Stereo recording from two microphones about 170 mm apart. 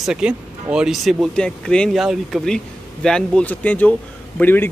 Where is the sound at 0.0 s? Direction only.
5° right (ahead or behind).